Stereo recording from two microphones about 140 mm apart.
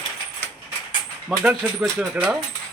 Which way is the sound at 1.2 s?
10° right (ahead or behind).